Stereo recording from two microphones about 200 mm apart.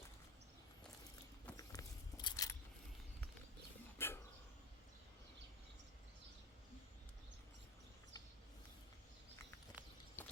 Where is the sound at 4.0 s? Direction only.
10° left (ahead or behind).